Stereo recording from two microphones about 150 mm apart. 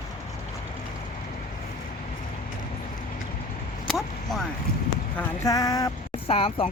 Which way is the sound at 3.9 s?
Centre (ahead or behind).